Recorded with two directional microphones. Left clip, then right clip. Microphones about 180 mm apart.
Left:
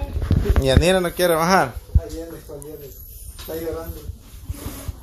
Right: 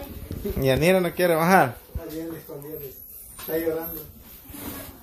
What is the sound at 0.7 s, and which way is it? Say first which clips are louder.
Speech: left 2 dB; centre (ahead or behind).